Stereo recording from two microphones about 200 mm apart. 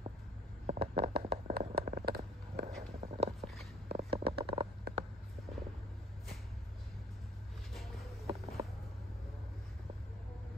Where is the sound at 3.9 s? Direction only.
30° right (ahead or behind).